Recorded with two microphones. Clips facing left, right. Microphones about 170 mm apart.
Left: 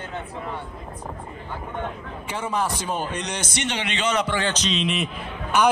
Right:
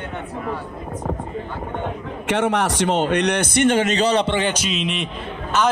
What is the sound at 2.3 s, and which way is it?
A man's voice, 75° right (ahead or behind).